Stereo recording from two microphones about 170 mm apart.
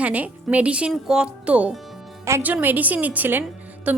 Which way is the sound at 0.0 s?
10° right (ahead or behind).